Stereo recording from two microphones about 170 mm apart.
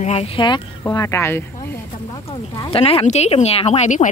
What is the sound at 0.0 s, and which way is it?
Speech, 35° left (ahead or behind).